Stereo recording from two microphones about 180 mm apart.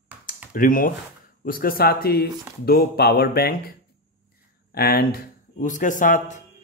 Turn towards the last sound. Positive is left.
turn(degrees=45)  # may be behind; listen again after turning